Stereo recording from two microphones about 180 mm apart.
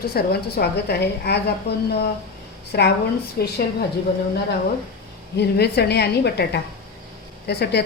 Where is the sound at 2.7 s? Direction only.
65° left (ahead or behind).